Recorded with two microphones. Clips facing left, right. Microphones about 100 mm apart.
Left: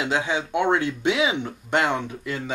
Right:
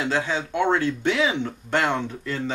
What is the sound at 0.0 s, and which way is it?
Speech, 15° left (ahead or behind).